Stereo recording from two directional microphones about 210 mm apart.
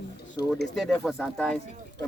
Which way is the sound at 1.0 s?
Centre (ahead or behind).